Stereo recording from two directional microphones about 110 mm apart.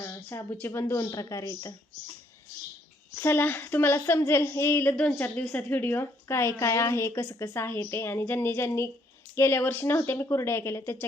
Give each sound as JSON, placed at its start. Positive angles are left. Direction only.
{"t": 0.3, "sound": "a woman's voice", "side_deg": 20}
{"t": 3.2, "sound": "a woman's voice", "side_deg": 20}
{"t": 4.9, "sound": "a woman's voice", "side_deg": 10}